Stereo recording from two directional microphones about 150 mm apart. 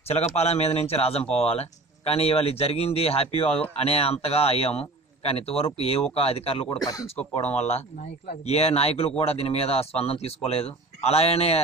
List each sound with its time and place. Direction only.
0.4 s a man's voice: 45° left (ahead or behind)